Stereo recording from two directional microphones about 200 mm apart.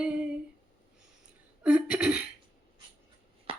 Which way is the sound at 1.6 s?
5° right (ahead or behind).